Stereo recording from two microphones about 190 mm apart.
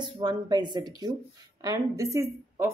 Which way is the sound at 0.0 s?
25° right (ahead or behind).